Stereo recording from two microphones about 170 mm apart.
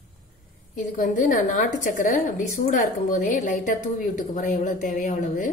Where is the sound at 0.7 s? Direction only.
50° left (ahead or behind).